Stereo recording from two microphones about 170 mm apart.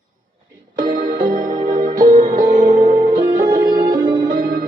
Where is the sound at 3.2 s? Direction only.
20° right (ahead or behind).